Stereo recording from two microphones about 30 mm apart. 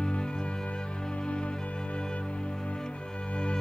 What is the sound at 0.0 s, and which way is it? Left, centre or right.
Music, left.